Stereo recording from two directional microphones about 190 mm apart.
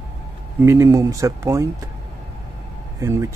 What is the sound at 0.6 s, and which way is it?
Speech, 15° right (ahead or behind).